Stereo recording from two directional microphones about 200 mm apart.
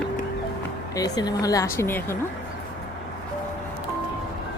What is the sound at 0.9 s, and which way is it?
A woman's voice, 20° left (ahead or behind).